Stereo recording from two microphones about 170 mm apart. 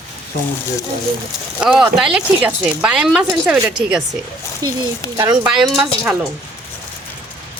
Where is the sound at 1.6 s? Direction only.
5° right (ahead or behind).